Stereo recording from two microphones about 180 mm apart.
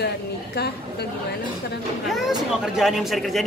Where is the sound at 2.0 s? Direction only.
Centre (ahead or behind).